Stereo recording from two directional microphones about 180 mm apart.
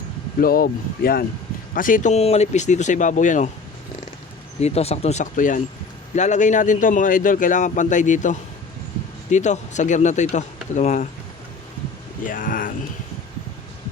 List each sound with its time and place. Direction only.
0.3 s speech: 55° left (ahead or behind)
4.6 s a man's voice: 35° left (ahead or behind)
12.2 s a man's voice: 50° left (ahead or behind)